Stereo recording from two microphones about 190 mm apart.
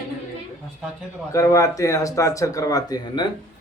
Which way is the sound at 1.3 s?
15° left (ahead or behind).